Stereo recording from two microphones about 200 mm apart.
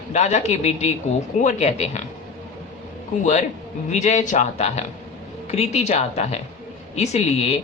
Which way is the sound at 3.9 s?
35° left (ahead or behind).